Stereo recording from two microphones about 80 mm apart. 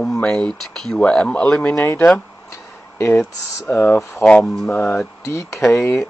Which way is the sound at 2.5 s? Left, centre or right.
Left.